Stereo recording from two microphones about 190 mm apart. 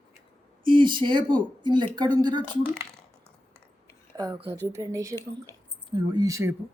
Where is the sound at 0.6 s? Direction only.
25° right (ahead or behind).